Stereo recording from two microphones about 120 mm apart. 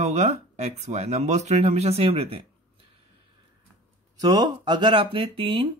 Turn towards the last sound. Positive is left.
turn(degrees=-50)  # may be behind; listen again after turning